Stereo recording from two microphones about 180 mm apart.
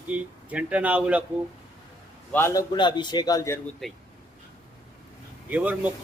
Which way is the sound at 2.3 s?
15° left (ahead or behind).